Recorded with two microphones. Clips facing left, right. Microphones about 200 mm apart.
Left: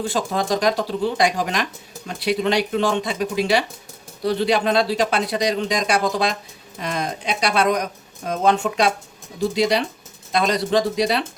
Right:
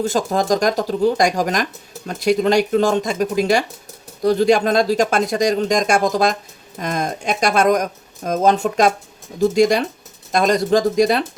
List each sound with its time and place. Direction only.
0.0 s speech: 45° right (ahead or behind)